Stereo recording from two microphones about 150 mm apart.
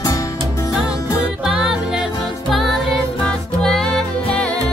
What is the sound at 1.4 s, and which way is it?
Music, 5° right (ahead or behind).